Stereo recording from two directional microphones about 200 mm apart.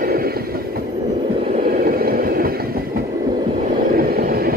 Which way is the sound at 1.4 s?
40° right (ahead or behind).